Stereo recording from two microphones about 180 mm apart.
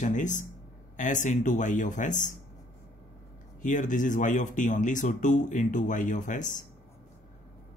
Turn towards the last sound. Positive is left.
turn(degrees=45)  # may be behind; listen again after turning